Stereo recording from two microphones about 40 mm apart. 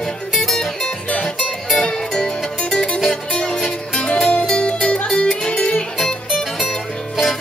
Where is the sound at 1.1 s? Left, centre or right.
Left.